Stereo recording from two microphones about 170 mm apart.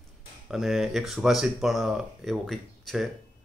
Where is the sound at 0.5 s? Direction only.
Centre (ahead or behind).